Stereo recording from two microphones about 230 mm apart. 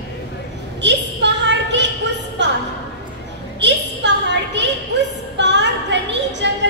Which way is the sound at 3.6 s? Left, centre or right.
Right.